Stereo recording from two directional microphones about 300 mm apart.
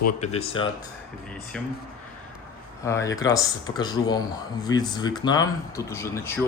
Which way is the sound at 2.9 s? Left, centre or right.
Centre.